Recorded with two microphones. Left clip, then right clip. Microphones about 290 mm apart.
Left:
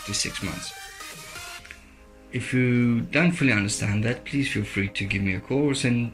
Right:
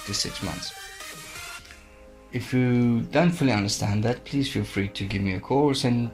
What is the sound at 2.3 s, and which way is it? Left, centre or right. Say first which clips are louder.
Speech: left 1 dB; right.